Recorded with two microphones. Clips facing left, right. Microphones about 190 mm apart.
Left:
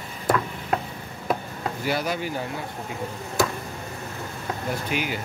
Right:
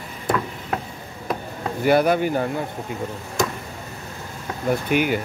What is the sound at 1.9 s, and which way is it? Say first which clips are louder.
Speech: right 10 dB; 55° right (ahead or behind).